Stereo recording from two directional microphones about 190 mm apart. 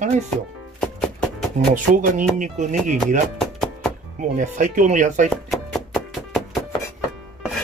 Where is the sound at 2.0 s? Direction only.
45° right (ahead or behind).